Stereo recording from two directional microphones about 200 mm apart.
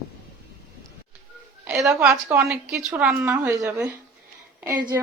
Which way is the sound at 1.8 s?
5° right (ahead or behind).